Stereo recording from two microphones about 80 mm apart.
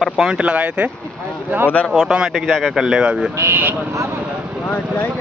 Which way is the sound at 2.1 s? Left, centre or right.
Centre.